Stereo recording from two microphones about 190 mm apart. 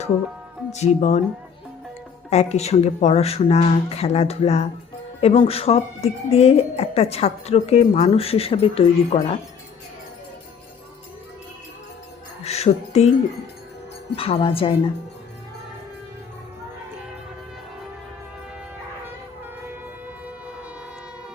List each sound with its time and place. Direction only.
0.7 s a woman's voice: 35° left (ahead or behind)
2.3 s a woman's voice: 35° left (ahead or behind)
12.5 s speech: 35° left (ahead or behind)
14.2 s a woman's voice: 30° left (ahead or behind)